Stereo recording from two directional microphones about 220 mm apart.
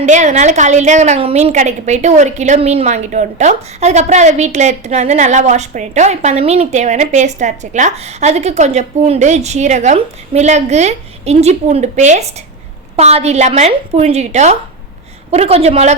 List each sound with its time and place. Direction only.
0.0 s a woman's voice: 30° right (ahead or behind)